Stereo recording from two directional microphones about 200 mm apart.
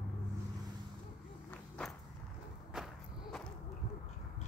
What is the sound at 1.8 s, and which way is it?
Walk, 5° left (ahead or behind).